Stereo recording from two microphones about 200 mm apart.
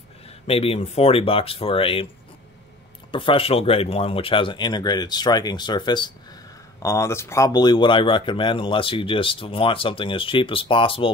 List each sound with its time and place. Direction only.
0.5 s speech: 30° left (ahead or behind)
3.1 s speech: 25° left (ahead or behind)